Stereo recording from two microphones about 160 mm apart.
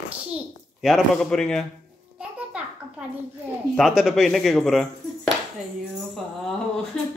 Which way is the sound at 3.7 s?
Centre (ahead or behind).